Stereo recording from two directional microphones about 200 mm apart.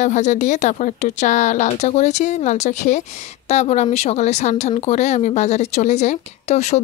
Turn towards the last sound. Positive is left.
turn(degrees=35)  # may be behind; listen again after turning